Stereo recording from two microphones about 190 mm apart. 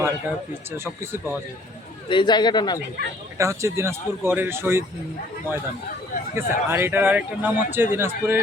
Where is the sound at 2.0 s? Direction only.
25° left (ahead or behind).